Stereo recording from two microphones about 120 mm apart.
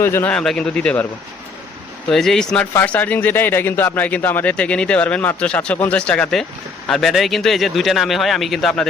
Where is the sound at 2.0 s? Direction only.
5° left (ahead or behind).